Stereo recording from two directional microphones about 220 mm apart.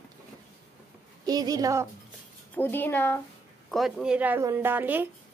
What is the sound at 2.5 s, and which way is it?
Speech, 10° left (ahead or behind).